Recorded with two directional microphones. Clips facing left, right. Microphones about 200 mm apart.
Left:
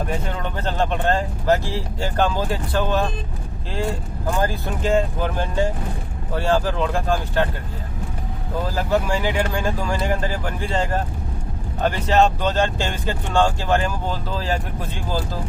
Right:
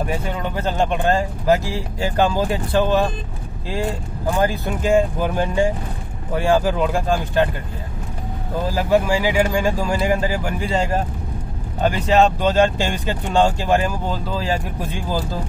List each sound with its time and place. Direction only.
0.0 s speech: 10° right (ahead or behind)
4.4 s speech: 15° right (ahead or behind)
8.7 s speech: 10° right (ahead or behind)